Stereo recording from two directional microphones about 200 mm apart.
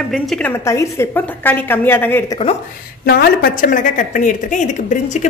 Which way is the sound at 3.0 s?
50° left (ahead or behind).